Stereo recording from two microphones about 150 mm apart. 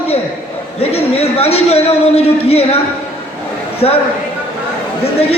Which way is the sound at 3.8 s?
40° left (ahead or behind).